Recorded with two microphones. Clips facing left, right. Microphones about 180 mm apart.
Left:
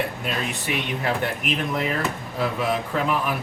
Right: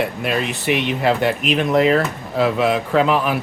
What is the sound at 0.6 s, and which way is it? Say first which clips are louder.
Speech: right 8 dB; 80° right.